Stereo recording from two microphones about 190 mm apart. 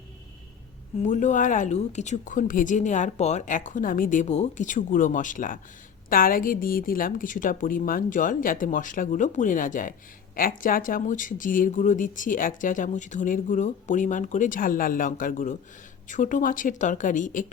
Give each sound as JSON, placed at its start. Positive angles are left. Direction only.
{"t": 1.0, "sound": "speech", "side_deg": 40}